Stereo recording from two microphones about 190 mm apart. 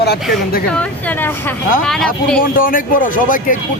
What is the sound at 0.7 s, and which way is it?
Speech, 5° left (ahead or behind).